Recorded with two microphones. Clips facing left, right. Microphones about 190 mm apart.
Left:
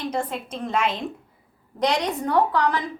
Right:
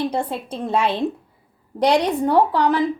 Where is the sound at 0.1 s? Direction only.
30° right (ahead or behind).